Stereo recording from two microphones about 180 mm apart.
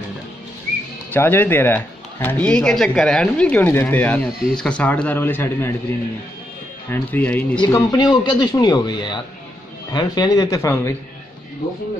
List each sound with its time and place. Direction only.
1.1 s speech: 10° left (ahead or behind)
6.9 s speech: 10° left (ahead or behind)
7.6 s a man's voice: 25° left (ahead or behind)